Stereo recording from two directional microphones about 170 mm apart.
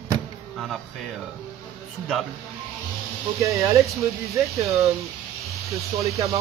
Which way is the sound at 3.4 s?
20° right (ahead or behind).